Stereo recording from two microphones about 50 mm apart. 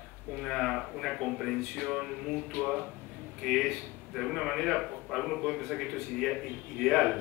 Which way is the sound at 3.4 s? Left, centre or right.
Centre.